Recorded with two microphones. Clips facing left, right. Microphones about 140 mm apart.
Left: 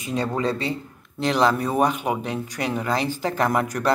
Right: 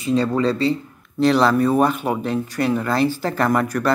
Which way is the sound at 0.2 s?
20° left (ahead or behind).